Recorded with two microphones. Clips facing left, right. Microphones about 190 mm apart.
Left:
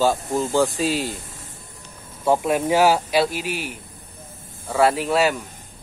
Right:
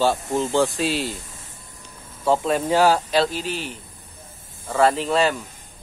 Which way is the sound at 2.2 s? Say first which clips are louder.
Left 1 dB; 10° left (ahead or behind).